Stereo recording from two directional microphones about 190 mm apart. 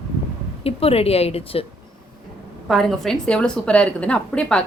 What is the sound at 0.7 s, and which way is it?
Speech, 30° left (ahead or behind).